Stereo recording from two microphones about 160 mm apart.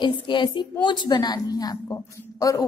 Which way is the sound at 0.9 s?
25° left (ahead or behind).